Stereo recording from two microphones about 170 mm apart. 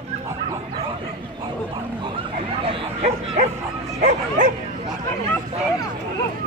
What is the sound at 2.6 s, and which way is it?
Bow-wow, 35° right (ahead or behind).